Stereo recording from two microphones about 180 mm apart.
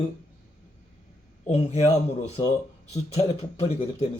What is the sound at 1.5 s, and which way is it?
Speech, 40° left (ahead or behind).